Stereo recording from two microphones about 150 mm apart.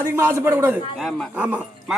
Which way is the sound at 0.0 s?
15° right (ahead or behind).